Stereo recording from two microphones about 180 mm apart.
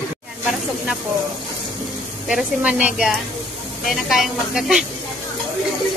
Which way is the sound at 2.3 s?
5° right (ahead or behind).